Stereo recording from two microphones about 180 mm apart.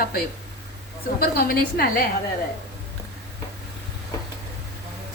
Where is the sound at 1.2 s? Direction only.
55° left (ahead or behind).